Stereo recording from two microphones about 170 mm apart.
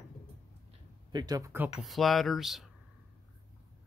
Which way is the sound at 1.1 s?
20° right (ahead or behind).